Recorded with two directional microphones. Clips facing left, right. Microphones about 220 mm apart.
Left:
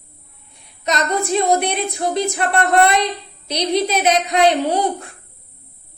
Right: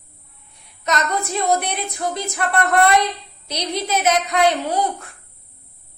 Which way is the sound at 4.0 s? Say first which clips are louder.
Right 1 dB; 25° left (ahead or behind).